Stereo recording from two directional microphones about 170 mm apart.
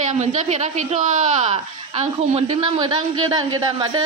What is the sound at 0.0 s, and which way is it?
A woman's voice, 45° right (ahead or behind).